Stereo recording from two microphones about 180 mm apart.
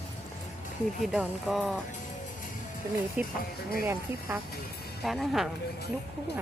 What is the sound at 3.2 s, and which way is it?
Speech, 10° right (ahead or behind).